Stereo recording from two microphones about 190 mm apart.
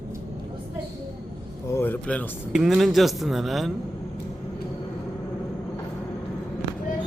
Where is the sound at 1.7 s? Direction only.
10° left (ahead or behind).